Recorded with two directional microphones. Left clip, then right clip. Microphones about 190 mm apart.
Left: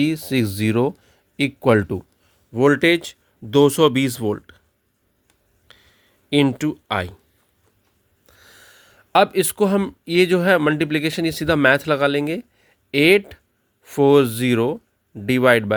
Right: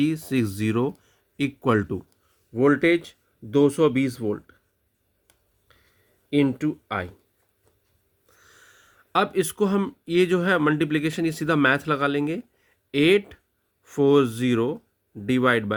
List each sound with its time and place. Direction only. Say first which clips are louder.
0.0 s speech: left 4 dB; 30° left (ahead or behind)
2.5 s speech: left 4 dB; 55° left (ahead or behind)
5.7 s a sound: left 10 dB; 50° left (ahead or behind)
6.3 s speech: left 4 dB; 55° left (ahead or behind)
8.4 s speech: left 5 dB; 40° left (ahead or behind)